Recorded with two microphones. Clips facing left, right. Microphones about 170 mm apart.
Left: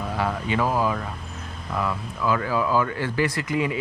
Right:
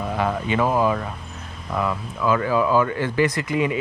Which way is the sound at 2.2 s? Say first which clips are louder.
Right 4 dB; 20° right (ahead or behind).